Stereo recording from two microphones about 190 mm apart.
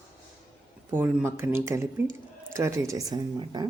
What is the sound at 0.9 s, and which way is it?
Speech, 10° right (ahead or behind).